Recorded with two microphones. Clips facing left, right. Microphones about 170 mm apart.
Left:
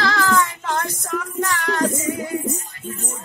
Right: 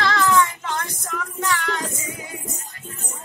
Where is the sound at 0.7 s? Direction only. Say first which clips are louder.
Left 7 dB; 40° left (ahead or behind).